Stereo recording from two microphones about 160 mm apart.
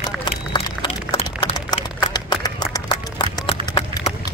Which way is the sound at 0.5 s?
30° left (ahead or behind).